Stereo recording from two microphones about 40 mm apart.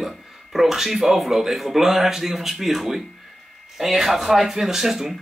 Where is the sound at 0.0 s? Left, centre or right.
Centre.